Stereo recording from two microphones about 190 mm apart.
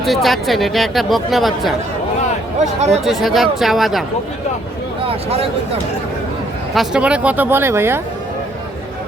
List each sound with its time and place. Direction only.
0.0 s speech: centre (ahead or behind)
2.9 s speech: centre (ahead or behind)
5.0 s speech: 30° right (ahead or behind)
6.7 s speech: 5° right (ahead or behind)